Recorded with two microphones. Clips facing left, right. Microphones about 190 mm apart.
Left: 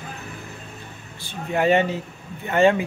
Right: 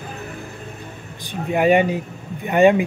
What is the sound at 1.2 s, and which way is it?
Speech, 15° right (ahead or behind).